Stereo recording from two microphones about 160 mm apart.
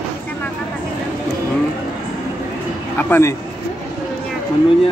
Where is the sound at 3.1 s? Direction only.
15° left (ahead or behind).